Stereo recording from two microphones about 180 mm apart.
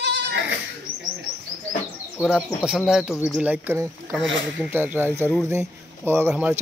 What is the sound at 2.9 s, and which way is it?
A child's voice, 5° right (ahead or behind).